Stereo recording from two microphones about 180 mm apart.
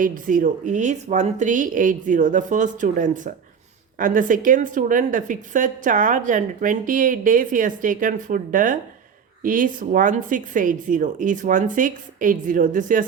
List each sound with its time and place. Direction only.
0.0 s speech: 50° right (ahead or behind)